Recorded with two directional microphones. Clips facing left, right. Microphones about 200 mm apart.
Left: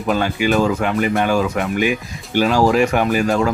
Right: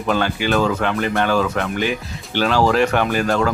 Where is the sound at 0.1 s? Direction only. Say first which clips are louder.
Left 2 dB; 5° left (ahead or behind).